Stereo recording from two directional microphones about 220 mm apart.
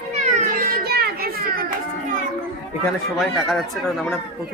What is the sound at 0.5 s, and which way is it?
Children playing, 45° right (ahead or behind).